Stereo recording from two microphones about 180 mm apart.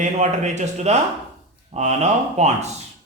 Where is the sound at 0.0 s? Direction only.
40° right (ahead or behind).